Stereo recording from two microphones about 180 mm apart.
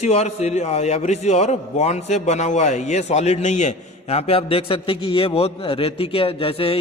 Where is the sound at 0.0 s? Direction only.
35° left (ahead or behind).